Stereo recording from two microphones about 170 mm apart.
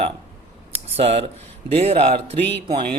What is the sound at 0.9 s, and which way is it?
Speech, 35° right (ahead or behind).